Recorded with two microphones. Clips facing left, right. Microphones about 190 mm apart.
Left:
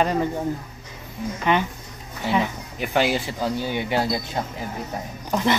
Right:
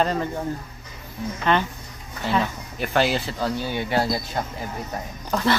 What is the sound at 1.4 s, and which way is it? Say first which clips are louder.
A woman's voice: even; 15° left (ahead or behind).